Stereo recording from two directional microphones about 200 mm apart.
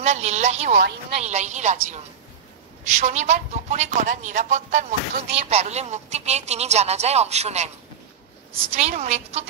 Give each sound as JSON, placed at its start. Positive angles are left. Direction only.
{"t": 0.0, "sound": "speech", "side_deg": -35}